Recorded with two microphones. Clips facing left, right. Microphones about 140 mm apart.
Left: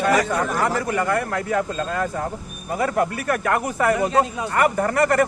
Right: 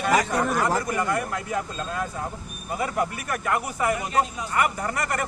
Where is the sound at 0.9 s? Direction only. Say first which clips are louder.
Left 4 dB; 65° left (ahead or behind).